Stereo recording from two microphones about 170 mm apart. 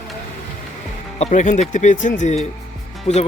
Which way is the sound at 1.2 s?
45° left (ahead or behind).